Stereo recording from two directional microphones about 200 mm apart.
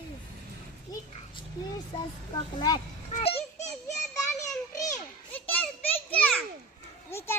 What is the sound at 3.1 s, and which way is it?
Children playing, 30° left (ahead or behind).